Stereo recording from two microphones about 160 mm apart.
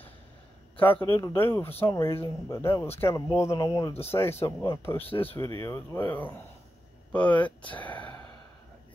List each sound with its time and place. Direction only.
0.7 s speech: 10° left (ahead or behind)
7.8 s gasp: 10° left (ahead or behind)